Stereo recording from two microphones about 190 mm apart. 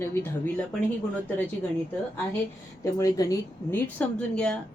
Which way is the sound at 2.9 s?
15° left (ahead or behind).